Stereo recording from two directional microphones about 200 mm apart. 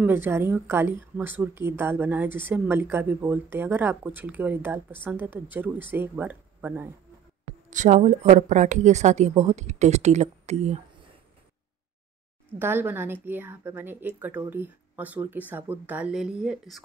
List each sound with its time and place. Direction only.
0.0 s a woman's voice: 10° right (ahead or behind)
7.7 s speech: 40° right (ahead or behind)
12.5 s a woman's voice: 10° right (ahead or behind)